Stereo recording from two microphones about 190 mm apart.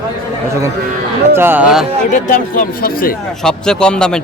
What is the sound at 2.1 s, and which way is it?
Speech, 45° left (ahead or behind).